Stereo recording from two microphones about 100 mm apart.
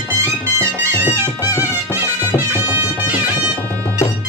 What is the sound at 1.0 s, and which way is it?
Music, 20° right (ahead or behind).